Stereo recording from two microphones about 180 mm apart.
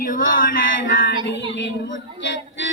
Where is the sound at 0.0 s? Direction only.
50° left (ahead or behind).